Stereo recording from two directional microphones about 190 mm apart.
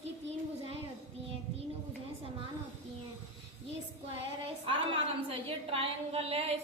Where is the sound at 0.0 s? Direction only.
35° right (ahead or behind).